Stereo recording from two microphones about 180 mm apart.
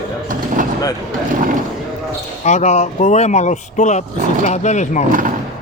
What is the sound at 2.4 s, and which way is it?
Speech, 40° left (ahead or behind).